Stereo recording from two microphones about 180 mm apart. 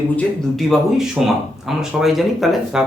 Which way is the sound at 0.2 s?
Centre (ahead or behind).